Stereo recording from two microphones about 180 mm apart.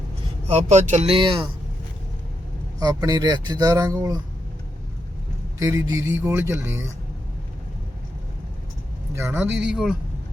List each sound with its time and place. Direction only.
0.4 s speech: 40° right (ahead or behind)
2.7 s speech: 20° right (ahead or behind)
5.5 s speech: 20° right (ahead or behind)
9.1 s speech: 15° right (ahead or behind)